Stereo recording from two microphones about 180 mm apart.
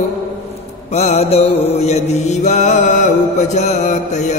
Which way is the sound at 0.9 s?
35° left (ahead or behind).